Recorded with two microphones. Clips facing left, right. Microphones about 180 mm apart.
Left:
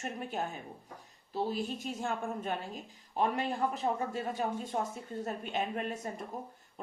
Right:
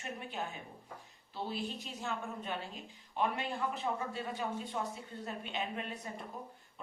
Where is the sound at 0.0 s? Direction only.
45° left (ahead or behind).